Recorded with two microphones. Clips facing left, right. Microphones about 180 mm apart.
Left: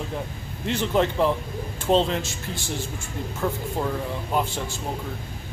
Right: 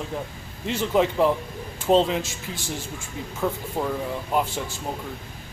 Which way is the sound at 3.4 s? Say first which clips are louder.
Right 1 dB; centre (ahead or behind).